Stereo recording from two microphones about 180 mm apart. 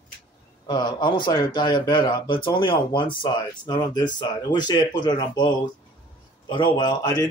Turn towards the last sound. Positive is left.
turn(degrees=20)  # may be behind; listen again after turning